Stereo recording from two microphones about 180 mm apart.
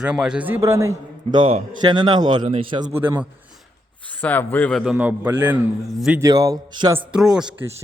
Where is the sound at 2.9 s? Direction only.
10° right (ahead or behind).